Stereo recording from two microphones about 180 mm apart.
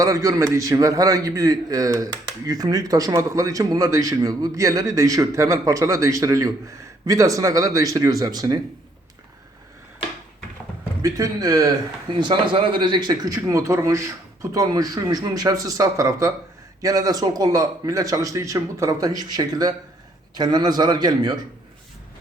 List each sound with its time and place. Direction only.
0.0 s speech: 15° right (ahead or behind)
11.0 s speech: 20° right (ahead or behind)